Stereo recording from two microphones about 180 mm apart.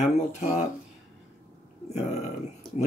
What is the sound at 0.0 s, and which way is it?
Speech, 45° left (ahead or behind).